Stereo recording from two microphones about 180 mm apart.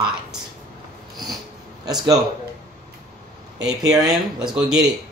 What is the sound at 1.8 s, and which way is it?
Speech, 20° right (ahead or behind).